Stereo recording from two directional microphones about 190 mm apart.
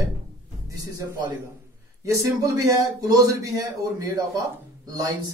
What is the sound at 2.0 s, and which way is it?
Speech, 15° right (ahead or behind).